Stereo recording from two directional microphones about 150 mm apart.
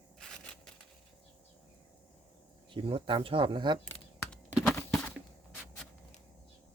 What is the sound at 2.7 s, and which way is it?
Speech, 35° right (ahead or behind).